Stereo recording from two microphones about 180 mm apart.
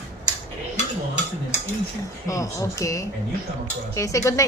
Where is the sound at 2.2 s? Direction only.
20° left (ahead or behind).